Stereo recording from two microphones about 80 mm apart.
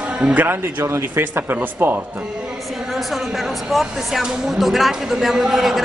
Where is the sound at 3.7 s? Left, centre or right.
Centre.